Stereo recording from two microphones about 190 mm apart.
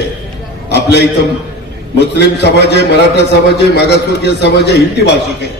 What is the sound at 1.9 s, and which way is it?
A man's voice, 60° left (ahead or behind).